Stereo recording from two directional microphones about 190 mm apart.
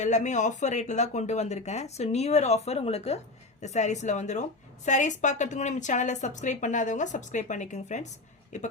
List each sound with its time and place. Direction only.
0.0 s speech: 40° left (ahead or behind)